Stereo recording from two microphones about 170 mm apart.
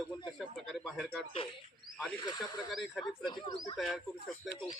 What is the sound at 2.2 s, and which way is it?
Speech, 25° left (ahead or behind).